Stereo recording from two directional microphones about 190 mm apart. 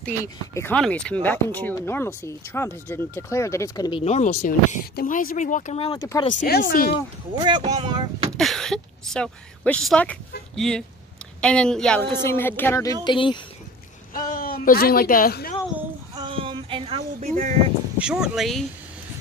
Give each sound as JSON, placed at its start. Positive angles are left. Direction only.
{"t": 0.0, "sound": "speech", "side_deg": 10}
{"t": 4.0, "sound": "speech", "side_deg": 35}
{"t": 5.9, "sound": "speech", "side_deg": 15}
{"t": 6.4, "sound": "speech", "side_deg": 55}
{"t": 7.3, "sound": "speech", "side_deg": -25}
{"t": 8.4, "sound": "speech", "side_deg": 0}
{"t": 13.0, "sound": "speech", "side_deg": 25}
{"t": 14.1, "sound": "speech", "side_deg": 50}
{"t": 16.2, "sound": "a sound", "side_deg": -30}
{"t": 17.9, "sound": "speech", "side_deg": -5}